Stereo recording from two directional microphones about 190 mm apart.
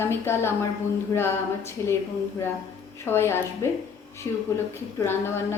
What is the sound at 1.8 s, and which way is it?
Speech, 15° left (ahead or behind).